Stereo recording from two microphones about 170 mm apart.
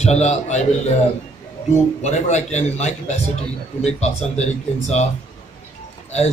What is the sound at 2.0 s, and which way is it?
A man's voice, 40° left (ahead or behind).